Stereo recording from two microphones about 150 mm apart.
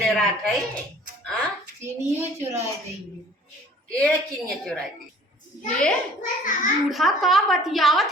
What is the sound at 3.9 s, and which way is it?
Speech, 5° left (ahead or behind).